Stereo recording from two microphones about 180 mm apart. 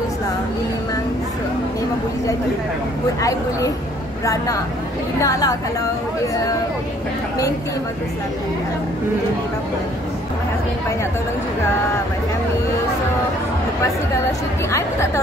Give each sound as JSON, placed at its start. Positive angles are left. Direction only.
{"t": 3.2, "sound": "speech", "side_deg": 20}
{"t": 5.2, "sound": "a woman's voice", "side_deg": 20}
{"t": 14.7, "sound": "speech", "side_deg": 15}